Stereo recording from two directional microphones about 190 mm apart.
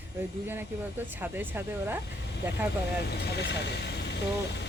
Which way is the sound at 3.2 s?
60° left (ahead or behind).